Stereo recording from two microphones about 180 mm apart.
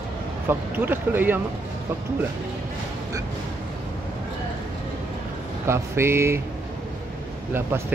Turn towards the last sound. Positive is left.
turn(degrees=-15)  # may be behind; listen again after turning